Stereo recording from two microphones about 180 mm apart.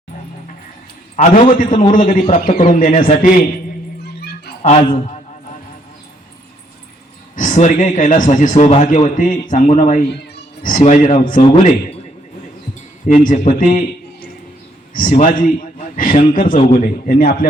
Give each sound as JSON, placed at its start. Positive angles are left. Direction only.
{"t": 1.1, "sound": "a man's voice", "side_deg": 45}
{"t": 4.6, "sound": "a man's voice", "side_deg": 35}
{"t": 7.3, "sound": "a man's voice", "side_deg": 45}
{"t": 13.1, "sound": "a man's voice", "side_deg": 40}
{"t": 14.9, "sound": "a man's voice", "side_deg": 45}